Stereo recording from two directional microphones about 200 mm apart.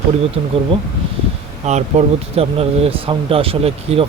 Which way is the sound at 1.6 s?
35° right (ahead or behind).